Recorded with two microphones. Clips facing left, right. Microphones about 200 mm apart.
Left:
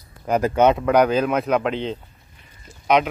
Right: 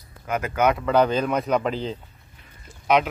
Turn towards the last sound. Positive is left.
turn(degrees=-5)  # may be behind; listen again after turning